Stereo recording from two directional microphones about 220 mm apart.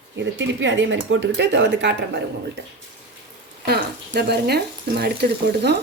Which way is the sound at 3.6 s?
45° right (ahead or behind).